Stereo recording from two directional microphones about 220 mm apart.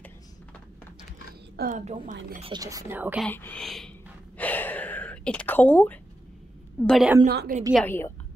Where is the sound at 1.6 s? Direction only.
35° right (ahead or behind).